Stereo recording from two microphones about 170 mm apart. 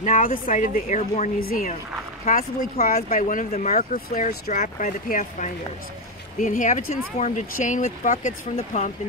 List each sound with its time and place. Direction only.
0.0 s speech: 50° left (ahead or behind)